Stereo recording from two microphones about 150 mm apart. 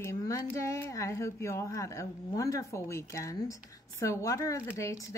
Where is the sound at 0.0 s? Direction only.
15° left (ahead or behind).